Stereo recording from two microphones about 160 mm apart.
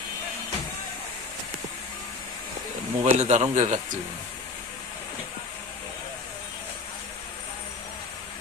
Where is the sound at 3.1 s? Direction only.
45° right (ahead or behind).